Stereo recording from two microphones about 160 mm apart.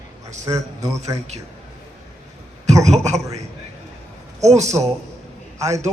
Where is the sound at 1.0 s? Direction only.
45° right (ahead or behind).